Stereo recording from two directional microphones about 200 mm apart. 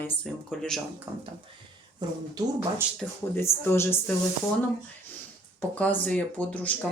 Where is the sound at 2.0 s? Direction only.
20° right (ahead or behind).